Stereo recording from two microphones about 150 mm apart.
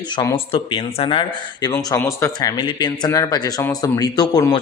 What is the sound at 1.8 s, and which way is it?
Speech, 20° left (ahead or behind).